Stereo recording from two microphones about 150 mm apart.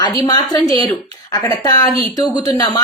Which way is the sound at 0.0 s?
25° left (ahead or behind).